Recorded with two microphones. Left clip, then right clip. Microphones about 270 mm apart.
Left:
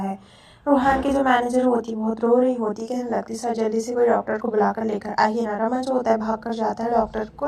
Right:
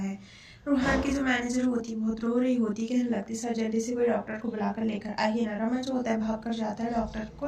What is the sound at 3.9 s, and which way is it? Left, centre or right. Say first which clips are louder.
A woman's voice: left 9 dB; left.